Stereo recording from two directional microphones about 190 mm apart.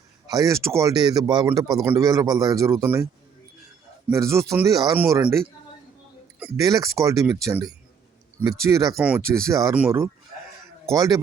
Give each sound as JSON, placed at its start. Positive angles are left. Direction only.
{"t": 0.3, "sound": "speech", "side_deg": -15}
{"t": 4.1, "sound": "speech", "side_deg": -15}
{"t": 6.6, "sound": "speech", "side_deg": -20}